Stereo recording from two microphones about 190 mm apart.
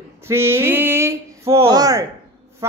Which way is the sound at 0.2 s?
15° right (ahead or behind).